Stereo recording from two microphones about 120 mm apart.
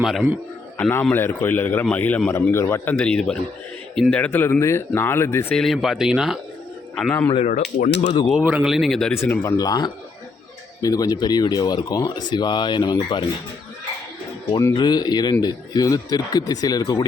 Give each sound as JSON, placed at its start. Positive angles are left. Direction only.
{"t": 0.0, "sound": "speech", "side_deg": 0}
{"t": 0.8, "sound": "a man's voice", "side_deg": 20}
{"t": 3.0, "sound": "a man's voice", "side_deg": 10}
{"t": 5.5, "sound": "speech", "side_deg": 0}
{"t": 7.1, "sound": "speech", "side_deg": 25}
{"t": 7.3, "sound": "speech", "side_deg": 75}
{"t": 8.3, "sound": "speech", "side_deg": -5}
{"t": 9.4, "sound": "speech", "side_deg": 30}
{"t": 14.7, "sound": "speech", "side_deg": 35}